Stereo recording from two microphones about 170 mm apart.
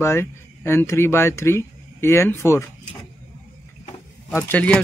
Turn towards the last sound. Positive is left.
turn(degrees=10)  # may be behind; listen again after turning